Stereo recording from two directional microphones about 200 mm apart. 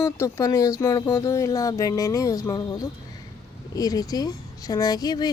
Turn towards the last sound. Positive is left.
turn(degrees=20)  # may be behind; listen again after turning